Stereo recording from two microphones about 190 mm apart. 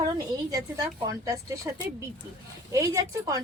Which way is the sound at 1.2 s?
15° right (ahead or behind).